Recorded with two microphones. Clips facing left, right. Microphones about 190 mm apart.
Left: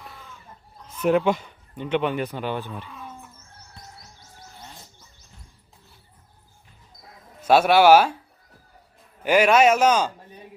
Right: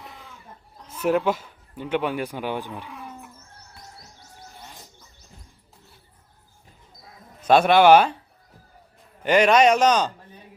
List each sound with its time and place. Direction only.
1.0 s speech: 5° right (ahead or behind)
7.4 s a man's voice: 5° left (ahead or behind)
9.2 s a man's voice: 5° left (ahead or behind)